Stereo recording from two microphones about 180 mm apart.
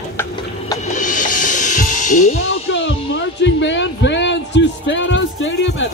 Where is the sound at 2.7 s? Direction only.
90° left.